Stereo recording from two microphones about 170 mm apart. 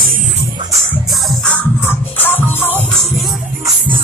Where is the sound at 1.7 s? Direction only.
10° left (ahead or behind).